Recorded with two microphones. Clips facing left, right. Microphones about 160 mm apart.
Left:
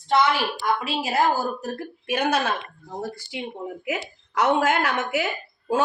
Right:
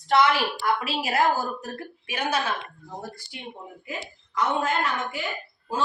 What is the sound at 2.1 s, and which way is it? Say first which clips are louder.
Speech: left 5 dB; 55° left (ahead or behind).